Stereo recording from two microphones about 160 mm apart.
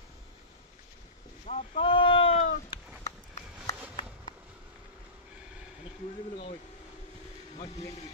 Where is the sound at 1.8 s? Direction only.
35° left (ahead or behind).